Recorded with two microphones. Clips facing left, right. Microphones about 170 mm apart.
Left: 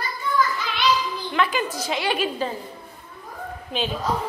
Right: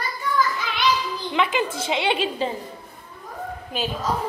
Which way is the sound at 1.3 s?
25° right (ahead or behind).